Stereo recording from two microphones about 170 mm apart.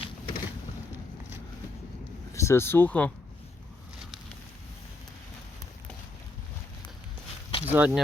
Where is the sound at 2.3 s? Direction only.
15° left (ahead or behind).